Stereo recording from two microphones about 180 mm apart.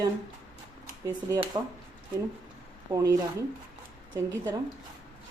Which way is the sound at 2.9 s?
20° right (ahead or behind).